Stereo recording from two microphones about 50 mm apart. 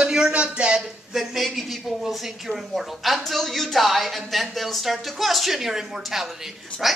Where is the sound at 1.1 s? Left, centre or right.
Centre.